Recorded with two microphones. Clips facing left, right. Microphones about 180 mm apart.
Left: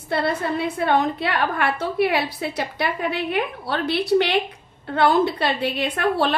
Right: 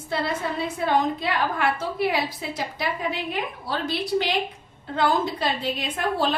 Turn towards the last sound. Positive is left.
turn(degrees=70)  # may be behind; listen again after turning